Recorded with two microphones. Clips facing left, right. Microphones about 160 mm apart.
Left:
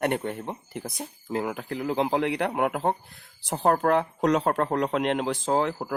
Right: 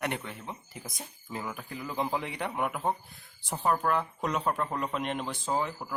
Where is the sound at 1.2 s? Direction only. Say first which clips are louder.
Left 9 dB; 70° left (ahead or behind); by 5.7 s 90° left.